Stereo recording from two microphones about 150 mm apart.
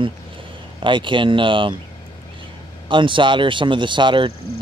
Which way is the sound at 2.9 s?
35° right (ahead or behind).